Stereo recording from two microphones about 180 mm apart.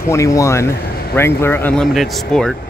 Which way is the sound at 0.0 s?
15° left (ahead or behind).